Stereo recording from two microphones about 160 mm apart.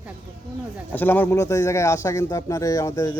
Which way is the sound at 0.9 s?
10° left (ahead or behind).